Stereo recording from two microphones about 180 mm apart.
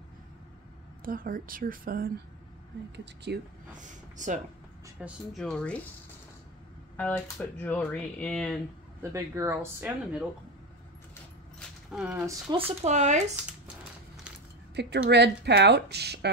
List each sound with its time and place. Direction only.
1.0 s a woman's voice: 50° right (ahead or behind)
3.3 s speech: 70° right (ahead or behind)
3.7 s speech: 45° right (ahead or behind)
5.0 s speech: 5° right (ahead or behind)
7.0 s speech: 10° left (ahead or behind)
9.1 s speech: 15° right (ahead or behind)
11.9 s speech: 5° right (ahead or behind)
12.5 s speech: 35° right (ahead or behind)
14.8 s speech: 70° right (ahead or behind)